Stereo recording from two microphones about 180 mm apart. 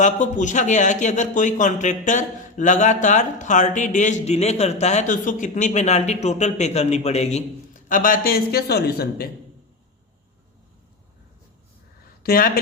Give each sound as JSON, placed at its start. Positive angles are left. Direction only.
{"t": 0.0, "sound": "a man's voice", "side_deg": 45}
{"t": 12.2, "sound": "speech", "side_deg": 55}